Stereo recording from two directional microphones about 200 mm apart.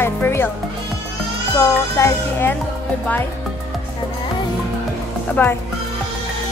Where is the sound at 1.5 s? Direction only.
15° left (ahead or behind).